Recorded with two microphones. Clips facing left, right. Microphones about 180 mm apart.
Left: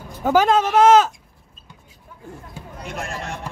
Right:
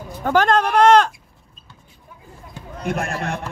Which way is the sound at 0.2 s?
5° left (ahead or behind).